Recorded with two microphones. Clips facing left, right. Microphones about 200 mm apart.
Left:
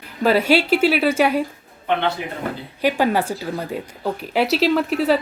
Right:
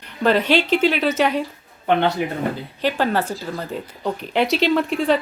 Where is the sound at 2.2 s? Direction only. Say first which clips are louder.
Right 6 dB; 50° right (ahead or behind).